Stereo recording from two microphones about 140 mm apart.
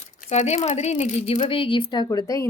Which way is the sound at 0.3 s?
55° left (ahead or behind).